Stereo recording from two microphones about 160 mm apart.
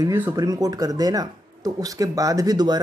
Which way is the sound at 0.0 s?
20° right (ahead or behind).